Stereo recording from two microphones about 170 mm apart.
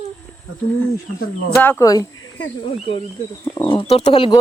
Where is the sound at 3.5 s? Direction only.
30° left (ahead or behind).